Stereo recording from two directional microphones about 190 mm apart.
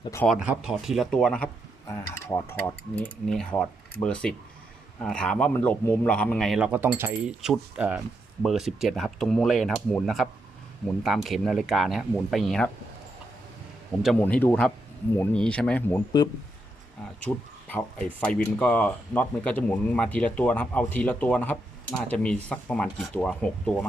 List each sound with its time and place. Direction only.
0.0 s speech: 15° left (ahead or behind)
0.3 s speech: 5° right (ahead or behind); by 3.1 s 15° left (ahead or behind)
3.2 s speech: centre (ahead or behind)
14.0 s speech: 5° left (ahead or behind)
17.2 s speech: 10° left (ahead or behind)